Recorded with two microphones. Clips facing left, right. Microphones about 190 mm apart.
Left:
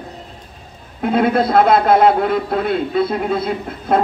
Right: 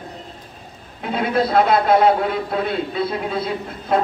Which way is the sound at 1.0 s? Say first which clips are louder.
Left 5 dB; 50° left (ahead or behind).